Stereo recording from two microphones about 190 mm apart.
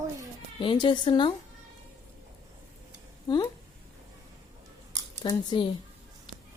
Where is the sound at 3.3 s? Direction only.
25° left (ahead or behind).